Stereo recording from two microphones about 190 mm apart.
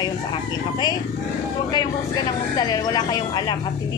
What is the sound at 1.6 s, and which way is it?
Speech, 20° left (ahead or behind).